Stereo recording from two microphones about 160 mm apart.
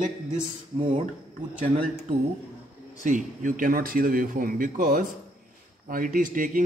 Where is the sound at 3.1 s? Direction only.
55° right (ahead or behind).